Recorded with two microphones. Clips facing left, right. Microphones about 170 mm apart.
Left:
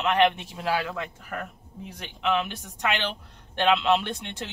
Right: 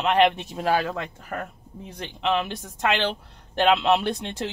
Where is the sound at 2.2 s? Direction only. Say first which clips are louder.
Right 1 dB; 35° right (ahead or behind).